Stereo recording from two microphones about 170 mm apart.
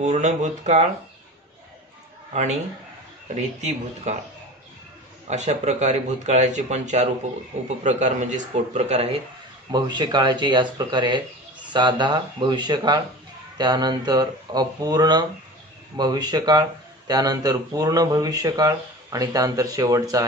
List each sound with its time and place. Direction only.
0.0 s speech: 45° right (ahead or behind)
3.3 s speech: 40° right (ahead or behind)
5.3 s speech: 40° right (ahead or behind)
9.7 s speech: 25° right (ahead or behind)